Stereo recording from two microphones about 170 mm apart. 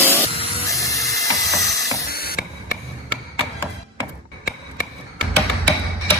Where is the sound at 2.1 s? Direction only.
65° left (ahead or behind).